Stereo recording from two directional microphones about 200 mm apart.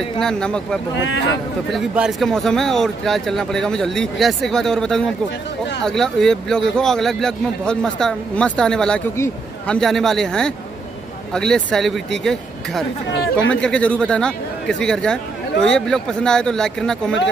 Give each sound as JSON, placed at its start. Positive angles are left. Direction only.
{"t": 0.2, "sound": "speech", "side_deg": 5}
{"t": 1.0, "sound": "a man's voice", "side_deg": 65}
{"t": 1.7, "sound": "speech", "side_deg": 0}